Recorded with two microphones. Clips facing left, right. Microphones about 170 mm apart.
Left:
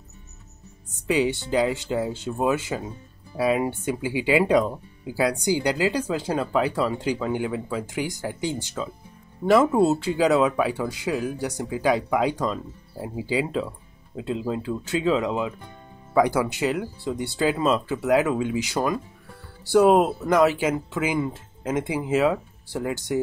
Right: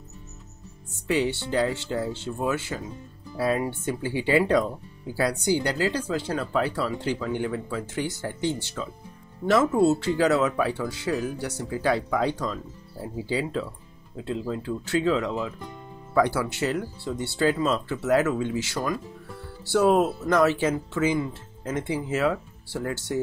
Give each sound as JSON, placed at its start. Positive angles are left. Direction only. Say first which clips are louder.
{"t": 1.0, "sound": "speech", "louder": "left 2 dB", "side_deg": 15}